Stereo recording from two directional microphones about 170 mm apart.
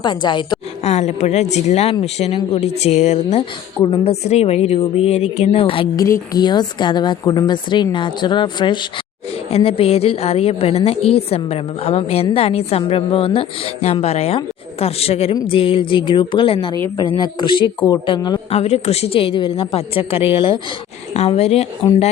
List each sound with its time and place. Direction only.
0.0 s a woman's voice: 25° left (ahead or behind)
0.9 s a woman's voice: 40° left (ahead or behind)
18.5 s a woman's voice: 40° left (ahead or behind)